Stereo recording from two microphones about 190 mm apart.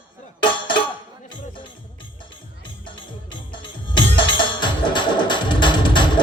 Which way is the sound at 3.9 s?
25° left (ahead or behind).